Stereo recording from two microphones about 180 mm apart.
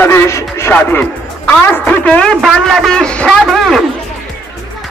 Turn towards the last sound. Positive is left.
turn(degrees=0)  # may be behind; listen again after turning